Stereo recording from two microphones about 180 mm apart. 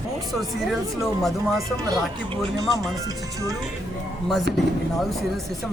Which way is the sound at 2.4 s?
20° right (ahead or behind).